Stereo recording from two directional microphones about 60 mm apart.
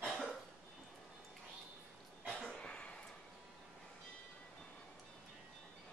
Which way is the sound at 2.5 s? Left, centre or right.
Centre.